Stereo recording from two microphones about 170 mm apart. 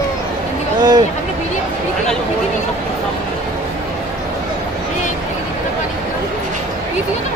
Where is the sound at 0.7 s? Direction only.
25° right (ahead or behind).